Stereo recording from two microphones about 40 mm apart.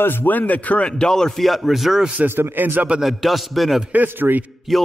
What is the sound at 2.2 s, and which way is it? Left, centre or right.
Speech, right.